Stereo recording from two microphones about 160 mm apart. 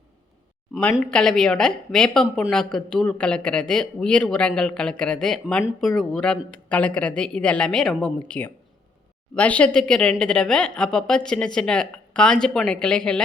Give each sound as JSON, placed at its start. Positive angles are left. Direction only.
{"t": 1.1, "sound": "speech", "side_deg": 5}